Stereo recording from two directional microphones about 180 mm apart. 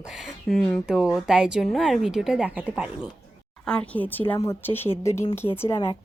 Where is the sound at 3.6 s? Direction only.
5° left (ahead or behind).